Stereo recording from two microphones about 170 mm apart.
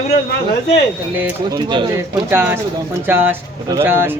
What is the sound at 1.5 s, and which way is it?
Speech, 25° right (ahead or behind).